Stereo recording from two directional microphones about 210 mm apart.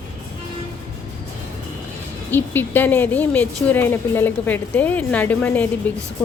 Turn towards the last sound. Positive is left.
turn(degrees=10)  # may be behind; listen again after turning